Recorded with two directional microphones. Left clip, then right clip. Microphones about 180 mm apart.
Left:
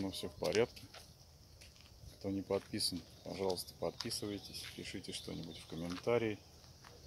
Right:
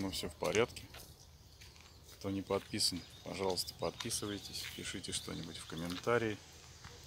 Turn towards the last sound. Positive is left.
turn(degrees=0)  # may be behind; listen again after turning